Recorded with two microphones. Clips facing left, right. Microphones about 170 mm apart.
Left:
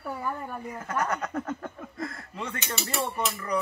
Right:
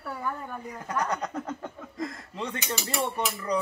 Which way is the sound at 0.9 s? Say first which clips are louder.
Even; 15° right (ahead or behind).